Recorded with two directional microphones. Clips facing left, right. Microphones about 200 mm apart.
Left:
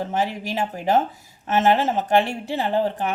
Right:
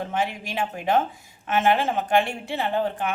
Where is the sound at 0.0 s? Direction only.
40° left (ahead or behind).